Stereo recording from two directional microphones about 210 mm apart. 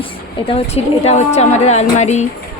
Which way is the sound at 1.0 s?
30° left (ahead or behind).